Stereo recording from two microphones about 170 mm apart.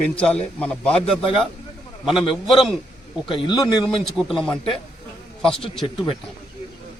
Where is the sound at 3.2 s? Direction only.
30° left (ahead or behind).